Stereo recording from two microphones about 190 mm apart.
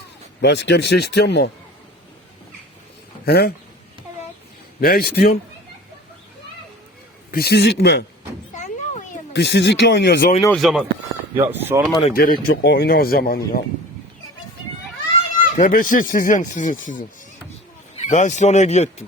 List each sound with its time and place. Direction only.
0.4 s speech: 65° left (ahead or behind)
3.2 s speech: 55° left (ahead or behind)
4.8 s speech: 50° left (ahead or behind)
7.3 s speech: 55° left (ahead or behind)
8.5 s a sound: 40° left (ahead or behind)
9.3 s speech: 65° left (ahead or behind)
10.5 s speech: centre (ahead or behind)
11.3 s speech: 10° right (ahead or behind)
11.9 s speech: 25° left (ahead or behind)
12.1 s speech: 50° left (ahead or behind)
15.5 s speech: 45° left (ahead or behind)